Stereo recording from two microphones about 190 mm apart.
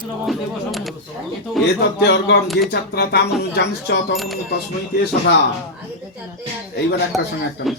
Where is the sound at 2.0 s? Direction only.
65° left (ahead or behind).